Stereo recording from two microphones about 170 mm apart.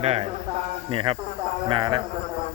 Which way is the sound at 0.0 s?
35° right (ahead or behind).